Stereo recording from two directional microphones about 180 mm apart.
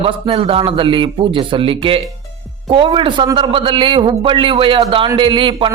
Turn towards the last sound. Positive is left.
turn(degrees=-30)  # may be behind; listen again after turning